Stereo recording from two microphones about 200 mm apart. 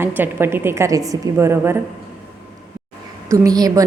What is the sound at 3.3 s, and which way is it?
Speech, 15° right (ahead or behind).